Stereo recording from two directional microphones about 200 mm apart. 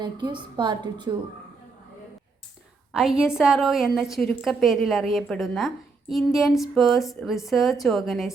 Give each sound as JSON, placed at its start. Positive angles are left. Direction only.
{"t": 0.0, "sound": "a woman's voice", "side_deg": -25}
{"t": 2.9, "sound": "a woman's voice", "side_deg": -5}